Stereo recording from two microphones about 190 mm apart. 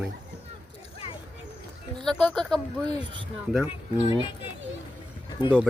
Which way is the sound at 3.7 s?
30° left (ahead or behind).